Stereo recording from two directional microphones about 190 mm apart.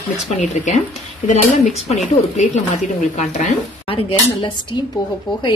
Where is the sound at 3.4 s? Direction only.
30° left (ahead or behind).